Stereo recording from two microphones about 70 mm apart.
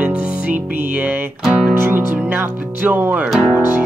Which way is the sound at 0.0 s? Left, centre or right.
Right.